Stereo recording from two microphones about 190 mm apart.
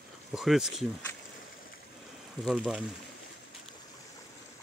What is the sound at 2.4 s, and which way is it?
Speech, centre (ahead or behind).